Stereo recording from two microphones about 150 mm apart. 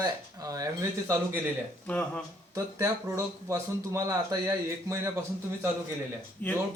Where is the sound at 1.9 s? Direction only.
10° left (ahead or behind).